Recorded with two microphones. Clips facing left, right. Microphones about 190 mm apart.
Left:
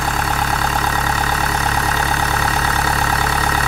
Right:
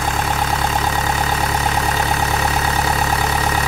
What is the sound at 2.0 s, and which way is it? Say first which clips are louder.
Vehicle: right 1 dB; 20° right (ahead or behind).